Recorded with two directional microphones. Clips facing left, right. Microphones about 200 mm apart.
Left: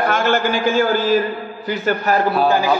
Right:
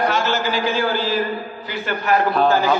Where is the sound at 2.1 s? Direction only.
40° left (ahead or behind).